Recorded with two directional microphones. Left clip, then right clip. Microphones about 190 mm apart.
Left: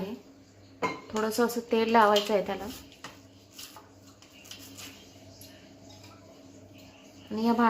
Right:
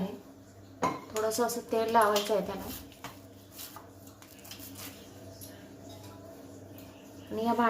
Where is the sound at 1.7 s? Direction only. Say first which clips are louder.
Left 3 dB; 40° left (ahead or behind).